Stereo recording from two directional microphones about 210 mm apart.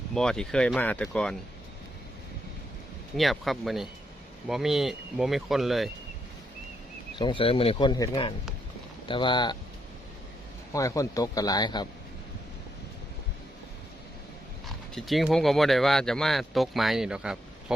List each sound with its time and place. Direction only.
0.1 s speech: 5° left (ahead or behind)
3.2 s speech: centre (ahead or behind)
7.2 s speech: 25° left (ahead or behind)
10.7 s a man's voice: 15° left (ahead or behind)
14.9 s speech: centre (ahead or behind)